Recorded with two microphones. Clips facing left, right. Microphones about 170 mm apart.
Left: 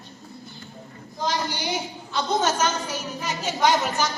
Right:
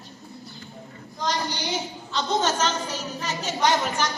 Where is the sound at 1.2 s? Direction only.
10° left (ahead or behind).